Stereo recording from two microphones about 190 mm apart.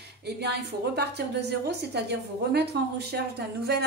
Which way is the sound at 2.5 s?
60° right (ahead or behind).